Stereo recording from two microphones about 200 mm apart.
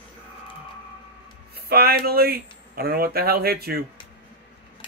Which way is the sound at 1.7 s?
50° right (ahead or behind).